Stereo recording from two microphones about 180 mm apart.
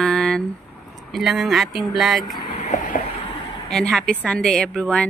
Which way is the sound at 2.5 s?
40° left (ahead or behind).